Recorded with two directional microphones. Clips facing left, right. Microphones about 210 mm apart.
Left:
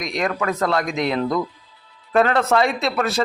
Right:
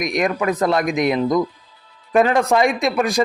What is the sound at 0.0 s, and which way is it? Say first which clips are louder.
Speech: right 3 dB; 15° right (ahead or behind).